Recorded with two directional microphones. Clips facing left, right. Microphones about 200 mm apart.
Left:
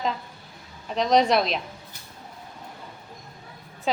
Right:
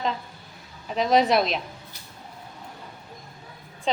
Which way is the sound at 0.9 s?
5° right (ahead or behind).